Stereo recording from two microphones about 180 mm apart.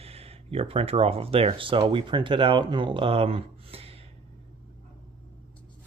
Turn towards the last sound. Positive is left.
turn(degrees=-35)  # may be behind; listen again after turning